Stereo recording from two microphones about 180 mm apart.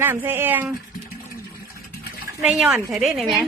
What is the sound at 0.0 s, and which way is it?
Speech, 10° right (ahead or behind).